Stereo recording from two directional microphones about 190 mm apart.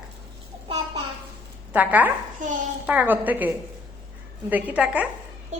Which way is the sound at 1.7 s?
10° right (ahead or behind).